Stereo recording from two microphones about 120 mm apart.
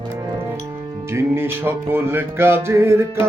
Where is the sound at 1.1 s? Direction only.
20° right (ahead or behind).